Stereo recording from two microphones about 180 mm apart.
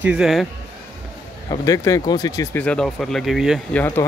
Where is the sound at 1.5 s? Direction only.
20° left (ahead or behind); by 3.8 s centre (ahead or behind).